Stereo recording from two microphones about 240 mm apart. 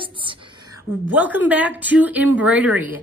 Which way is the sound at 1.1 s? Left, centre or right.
Centre.